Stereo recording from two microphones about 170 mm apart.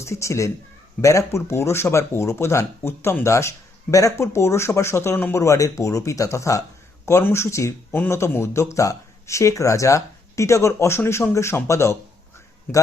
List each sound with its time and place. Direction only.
0.0 s speech: 15° left (ahead or behind)